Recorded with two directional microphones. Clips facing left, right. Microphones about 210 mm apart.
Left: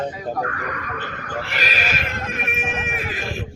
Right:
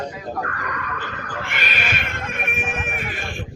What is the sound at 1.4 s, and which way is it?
Music, 35° left (ahead or behind).